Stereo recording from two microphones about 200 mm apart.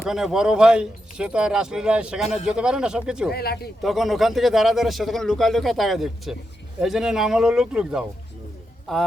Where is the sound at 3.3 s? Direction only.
50° left (ahead or behind).